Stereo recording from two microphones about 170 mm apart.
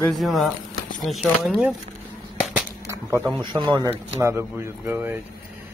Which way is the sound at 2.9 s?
15° right (ahead or behind).